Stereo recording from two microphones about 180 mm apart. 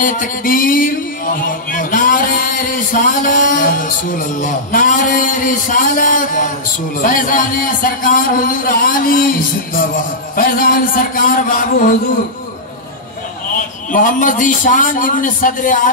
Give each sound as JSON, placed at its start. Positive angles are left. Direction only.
{"t": 0.0, "sound": "a man's voice", "side_deg": 50}
{"t": 13.6, "sound": "a man's voice", "side_deg": 50}